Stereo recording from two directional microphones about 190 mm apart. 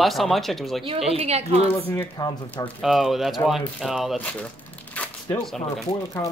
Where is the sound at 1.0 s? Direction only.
30° right (ahead or behind).